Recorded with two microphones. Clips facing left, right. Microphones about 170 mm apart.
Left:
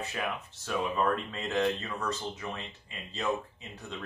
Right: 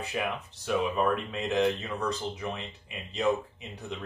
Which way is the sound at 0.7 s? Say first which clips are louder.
Right 3 dB; 15° right (ahead or behind).